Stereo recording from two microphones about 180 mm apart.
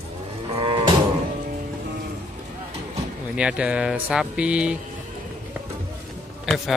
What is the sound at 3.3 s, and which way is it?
Speech, 5° right (ahead or behind).